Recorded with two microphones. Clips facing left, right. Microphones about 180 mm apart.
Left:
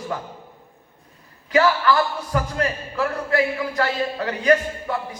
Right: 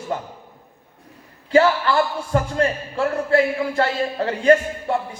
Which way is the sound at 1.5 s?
30° right (ahead or behind).